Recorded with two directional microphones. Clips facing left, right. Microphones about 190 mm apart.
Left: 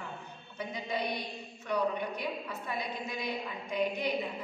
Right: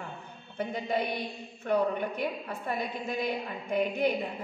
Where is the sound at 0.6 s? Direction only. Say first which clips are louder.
Right 5 dB; 55° right (ahead or behind).